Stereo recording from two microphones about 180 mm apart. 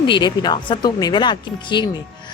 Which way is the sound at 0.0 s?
25° left (ahead or behind).